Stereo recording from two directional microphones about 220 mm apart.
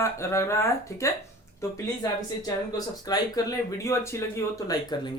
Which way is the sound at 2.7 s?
15° left (ahead or behind).